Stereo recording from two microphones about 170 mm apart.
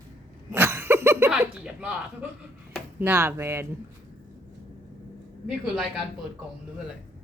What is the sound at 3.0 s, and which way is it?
Speech, 10° right (ahead or behind).